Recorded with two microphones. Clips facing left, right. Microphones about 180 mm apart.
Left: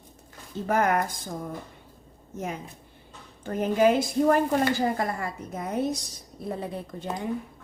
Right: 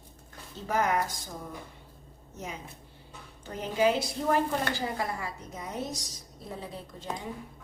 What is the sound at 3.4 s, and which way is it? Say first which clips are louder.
A woman's voice: left 5 dB; 50° left (ahead or behind).